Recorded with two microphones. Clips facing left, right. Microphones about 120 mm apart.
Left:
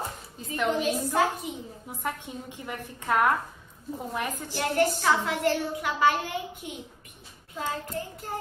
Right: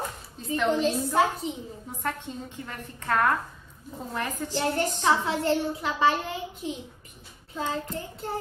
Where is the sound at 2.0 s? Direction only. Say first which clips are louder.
Right 1 dB; 15° left (ahead or behind).